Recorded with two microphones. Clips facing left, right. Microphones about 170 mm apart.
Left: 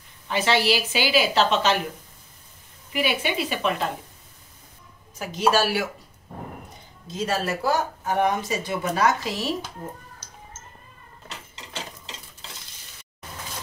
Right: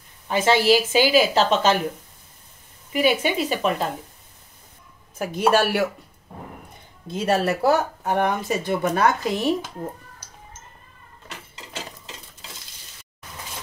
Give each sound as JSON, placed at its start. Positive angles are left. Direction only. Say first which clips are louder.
{"t": 0.3, "sound": "a woman's voice", "louder": "right 4 dB", "side_deg": -45}
{"t": 2.9, "sound": "a woman's voice", "louder": "right 5 dB", "side_deg": -45}
{"t": 5.2, "sound": "speech", "louder": "right 2 dB", "side_deg": -55}
{"t": 7.1, "sound": "speech", "louder": "right 5 dB", "side_deg": -60}